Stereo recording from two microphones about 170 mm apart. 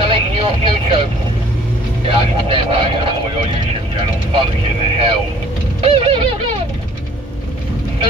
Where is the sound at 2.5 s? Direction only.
35° right (ahead or behind).